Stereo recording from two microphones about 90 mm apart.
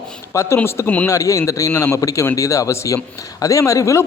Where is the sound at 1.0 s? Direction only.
35° left (ahead or behind).